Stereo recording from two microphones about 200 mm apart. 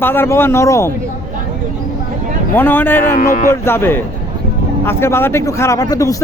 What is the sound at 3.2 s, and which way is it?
Speech, 45° left (ahead or behind).